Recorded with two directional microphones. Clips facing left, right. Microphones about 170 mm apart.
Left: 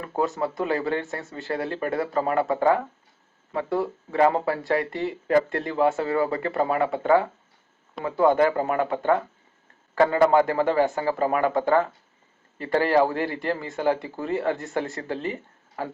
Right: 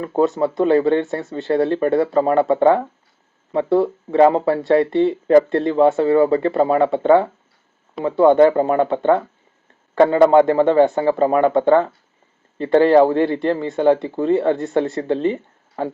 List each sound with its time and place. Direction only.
0.0 s speech: 25° right (ahead or behind)